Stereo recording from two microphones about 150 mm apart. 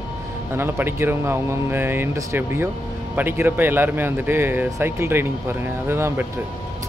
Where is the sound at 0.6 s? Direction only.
15° right (ahead or behind).